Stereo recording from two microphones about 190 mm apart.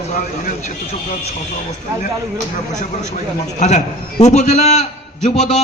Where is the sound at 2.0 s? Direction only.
40° left (ahead or behind).